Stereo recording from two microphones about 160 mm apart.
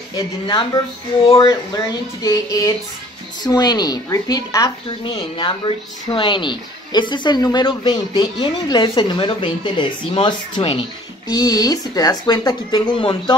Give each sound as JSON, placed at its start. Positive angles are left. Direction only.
{"t": 0.1, "sound": "speech", "side_deg": 25}
{"t": 4.8, "sound": "speech", "side_deg": 30}